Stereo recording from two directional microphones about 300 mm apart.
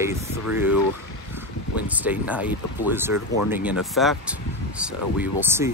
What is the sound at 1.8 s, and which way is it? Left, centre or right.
Speech, centre.